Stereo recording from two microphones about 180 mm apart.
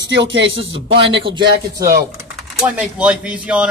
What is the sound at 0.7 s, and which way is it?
Speech, 30° right (ahead or behind).